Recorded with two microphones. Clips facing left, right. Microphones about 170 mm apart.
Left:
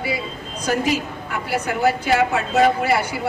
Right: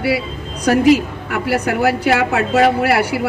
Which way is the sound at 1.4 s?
65° right (ahead or behind).